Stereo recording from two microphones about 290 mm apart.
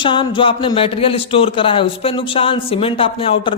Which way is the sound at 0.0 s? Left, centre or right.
Centre.